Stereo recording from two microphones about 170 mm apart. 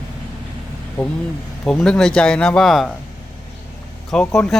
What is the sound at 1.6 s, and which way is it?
Speech, 5° left (ahead or behind).